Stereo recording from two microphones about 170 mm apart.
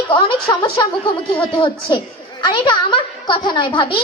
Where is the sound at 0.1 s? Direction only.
30° left (ahead or behind).